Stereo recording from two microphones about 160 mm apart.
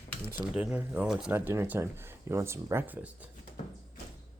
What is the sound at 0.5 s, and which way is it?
Speech, 10° right (ahead or behind).